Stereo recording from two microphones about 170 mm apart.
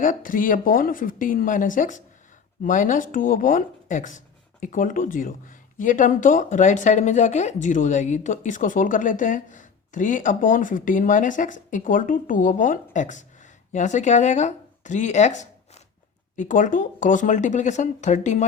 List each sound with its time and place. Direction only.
0.0 s speech: 50° left (ahead or behind)